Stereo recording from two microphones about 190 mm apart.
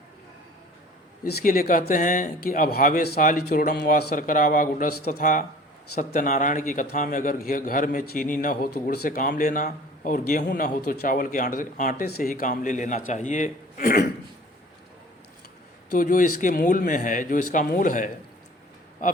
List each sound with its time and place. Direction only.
1.2 s a man's voice: 45° left (ahead or behind)
15.9 s a man's voice: 45° left (ahead or behind)